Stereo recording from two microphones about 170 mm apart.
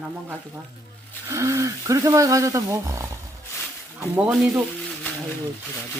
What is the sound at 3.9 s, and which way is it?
Speech, 5° right (ahead or behind).